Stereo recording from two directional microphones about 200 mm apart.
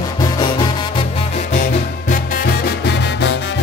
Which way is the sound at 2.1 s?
50° left (ahead or behind).